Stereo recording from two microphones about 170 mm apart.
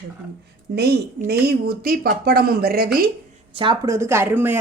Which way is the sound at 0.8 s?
70° right (ahead or behind).